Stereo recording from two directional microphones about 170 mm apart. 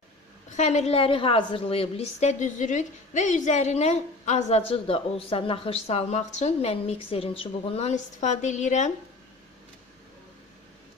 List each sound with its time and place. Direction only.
0.5 s a woman's voice: 45° left (ahead or behind)